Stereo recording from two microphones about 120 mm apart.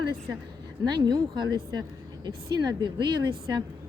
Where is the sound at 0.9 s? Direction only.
35° right (ahead or behind).